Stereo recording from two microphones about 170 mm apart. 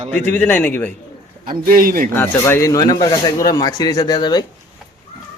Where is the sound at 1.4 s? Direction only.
55° right (ahead or behind).